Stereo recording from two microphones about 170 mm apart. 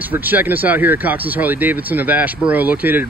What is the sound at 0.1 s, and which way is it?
Speech, 10° right (ahead or behind).